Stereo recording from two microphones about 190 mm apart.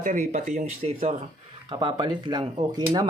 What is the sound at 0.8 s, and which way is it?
Speech, 30° right (ahead or behind).